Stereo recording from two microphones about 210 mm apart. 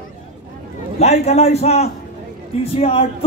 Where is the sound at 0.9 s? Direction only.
30° left (ahead or behind).